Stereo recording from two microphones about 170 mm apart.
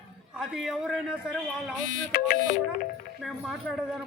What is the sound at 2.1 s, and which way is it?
Music, 65° left (ahead or behind).